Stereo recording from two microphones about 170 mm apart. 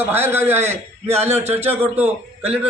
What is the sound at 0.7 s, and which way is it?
Speech, 40° right (ahead or behind).